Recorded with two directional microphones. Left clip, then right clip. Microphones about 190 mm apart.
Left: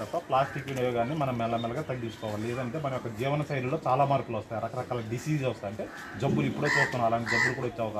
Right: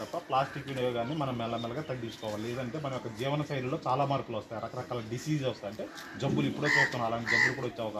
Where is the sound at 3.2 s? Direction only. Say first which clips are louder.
Left 2 dB; 5° left (ahead or behind).